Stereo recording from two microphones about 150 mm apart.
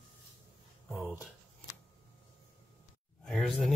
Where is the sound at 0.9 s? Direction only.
5° right (ahead or behind).